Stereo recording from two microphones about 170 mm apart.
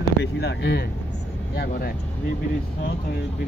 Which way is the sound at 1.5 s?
65° left (ahead or behind).